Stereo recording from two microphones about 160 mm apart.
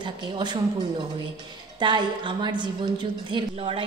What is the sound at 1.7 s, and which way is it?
A woman's voice, 30° right (ahead or behind).